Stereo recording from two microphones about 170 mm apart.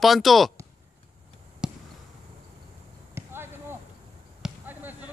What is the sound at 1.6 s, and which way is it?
Basketball bounce, 5° right (ahead or behind).